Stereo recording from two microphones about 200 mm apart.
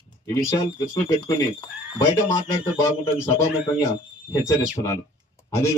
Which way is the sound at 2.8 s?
15° left (ahead or behind).